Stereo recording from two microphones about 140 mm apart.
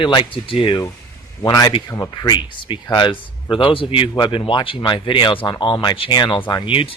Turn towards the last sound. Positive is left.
turn(degrees=40)  # may be behind; listen again after turning